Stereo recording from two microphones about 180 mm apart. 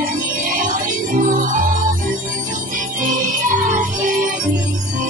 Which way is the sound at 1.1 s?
45° right (ahead or behind).